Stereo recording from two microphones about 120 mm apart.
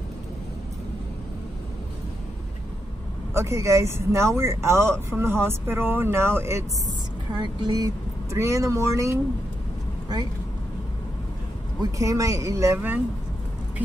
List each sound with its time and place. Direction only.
3.3 s speech: 25° right (ahead or behind)
7.6 s speech: 35° right (ahead or behind)
11.8 s speech: 25° right (ahead or behind)